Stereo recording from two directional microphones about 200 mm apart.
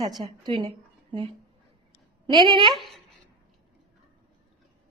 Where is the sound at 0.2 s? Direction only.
20° right (ahead or behind).